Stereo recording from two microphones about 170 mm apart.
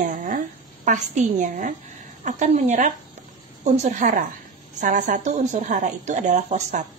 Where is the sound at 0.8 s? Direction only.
45° right (ahead or behind).